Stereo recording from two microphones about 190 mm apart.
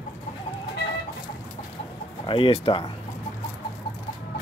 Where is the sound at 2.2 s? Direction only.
25° left (ahead or behind).